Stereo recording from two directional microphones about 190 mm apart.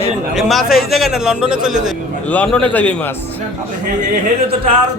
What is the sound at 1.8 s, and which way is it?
A man's voice, 5° left (ahead or behind).